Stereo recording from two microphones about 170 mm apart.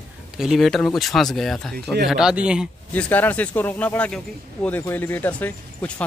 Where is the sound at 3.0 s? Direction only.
10° left (ahead or behind).